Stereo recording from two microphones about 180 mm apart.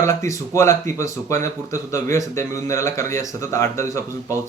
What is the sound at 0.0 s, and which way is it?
Speech, 15° left (ahead or behind).